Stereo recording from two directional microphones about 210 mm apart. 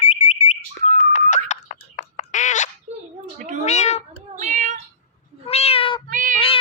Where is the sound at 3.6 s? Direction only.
35° left (ahead or behind).